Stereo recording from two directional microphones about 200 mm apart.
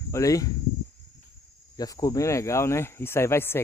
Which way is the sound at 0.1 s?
15° left (ahead or behind).